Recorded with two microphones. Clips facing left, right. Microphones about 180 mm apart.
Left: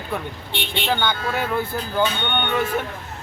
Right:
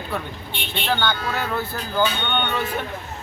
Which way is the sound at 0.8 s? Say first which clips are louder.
Even; 15° left (ahead or behind).